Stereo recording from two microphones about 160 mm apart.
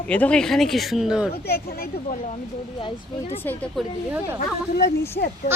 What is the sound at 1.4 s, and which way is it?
Speech, 75° left (ahead or behind).